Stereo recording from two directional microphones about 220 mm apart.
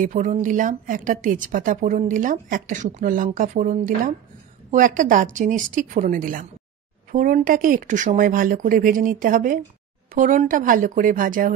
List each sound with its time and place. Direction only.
0.0 s a woman's voice: 35° right (ahead or behind)